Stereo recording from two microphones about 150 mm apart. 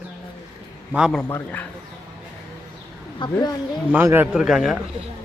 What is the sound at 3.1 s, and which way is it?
Speech, 30° left (ahead or behind).